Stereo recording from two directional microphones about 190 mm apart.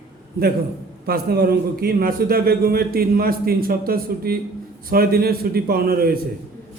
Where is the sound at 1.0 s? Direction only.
55° right (ahead or behind).